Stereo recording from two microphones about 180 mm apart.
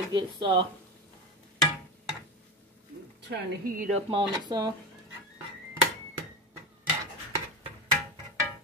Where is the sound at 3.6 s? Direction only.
50° right (ahead or behind).